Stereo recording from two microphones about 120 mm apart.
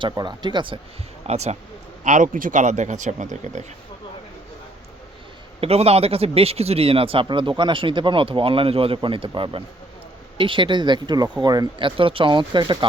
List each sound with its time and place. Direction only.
0.1 s speech: 35° right (ahead or behind)
1.3 s speech: 65° right (ahead or behind)
2.0 s speech: 90° right
5.5 s a man's voice: 55° right (ahead or behind); by 12.8 s 40° right (ahead or behind)